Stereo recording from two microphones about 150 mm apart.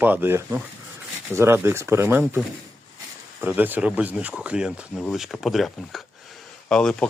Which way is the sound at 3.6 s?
10° right (ahead or behind).